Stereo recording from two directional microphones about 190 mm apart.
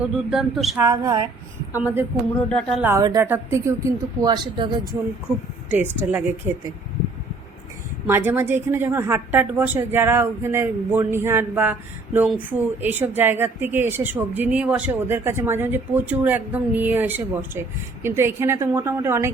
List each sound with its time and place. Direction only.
0.0 s speech: centre (ahead or behind)
0.8 s a woman's voice: 15° right (ahead or behind)
2.5 s speech: 5° left (ahead or behind)
2.8 s a woman's voice: 15° right (ahead or behind)
5.3 s a woman's voice: 5° right (ahead or behind)
8.0 s a woman's voice: 10° right (ahead or behind)